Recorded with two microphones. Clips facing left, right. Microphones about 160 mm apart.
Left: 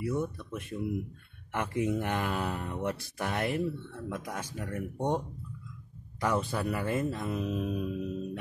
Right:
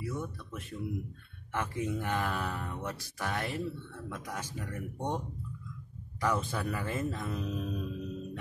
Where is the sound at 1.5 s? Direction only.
15° left (ahead or behind).